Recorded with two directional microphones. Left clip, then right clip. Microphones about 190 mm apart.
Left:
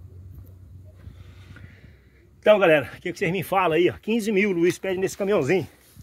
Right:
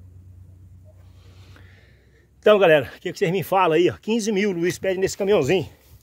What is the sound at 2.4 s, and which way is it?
Speech, 35° right (ahead or behind).